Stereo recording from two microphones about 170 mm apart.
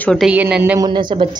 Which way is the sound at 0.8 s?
25° right (ahead or behind).